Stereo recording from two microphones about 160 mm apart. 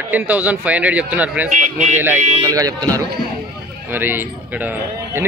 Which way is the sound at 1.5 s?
50° right (ahead or behind).